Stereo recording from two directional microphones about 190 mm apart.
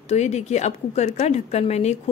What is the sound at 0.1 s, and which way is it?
A woman's voice, 35° left (ahead or behind).